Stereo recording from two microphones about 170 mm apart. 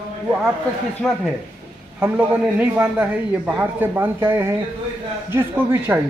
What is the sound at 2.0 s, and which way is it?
A man's voice, 10° right (ahead or behind).